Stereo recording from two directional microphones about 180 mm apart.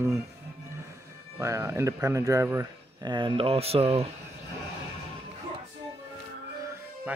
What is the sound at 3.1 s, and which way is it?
Speech, 30° right (ahead or behind).